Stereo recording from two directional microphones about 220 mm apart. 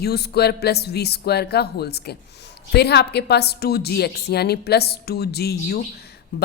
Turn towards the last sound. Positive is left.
turn(degrees=45)  # may be behind; listen again after turning